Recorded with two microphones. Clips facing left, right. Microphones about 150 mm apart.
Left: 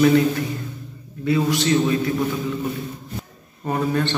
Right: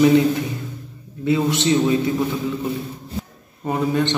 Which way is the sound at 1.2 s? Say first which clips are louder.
Right 1 dB; 20° right (ahead or behind).